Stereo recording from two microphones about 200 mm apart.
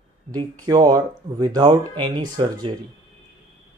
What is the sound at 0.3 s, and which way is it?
Speech, 20° right (ahead or behind).